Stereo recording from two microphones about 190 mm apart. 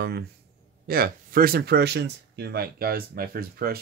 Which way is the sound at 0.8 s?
50° right (ahead or behind).